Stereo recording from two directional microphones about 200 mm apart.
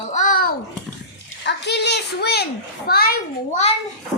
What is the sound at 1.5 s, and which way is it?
A child's voice, 55° left (ahead or behind).